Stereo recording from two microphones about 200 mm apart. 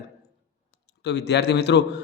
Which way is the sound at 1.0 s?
55° left (ahead or behind).